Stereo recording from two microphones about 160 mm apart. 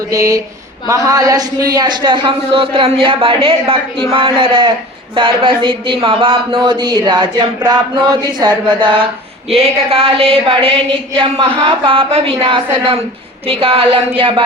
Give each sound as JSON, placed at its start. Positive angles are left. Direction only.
{"t": 0.1, "sound": "speech", "side_deg": -20}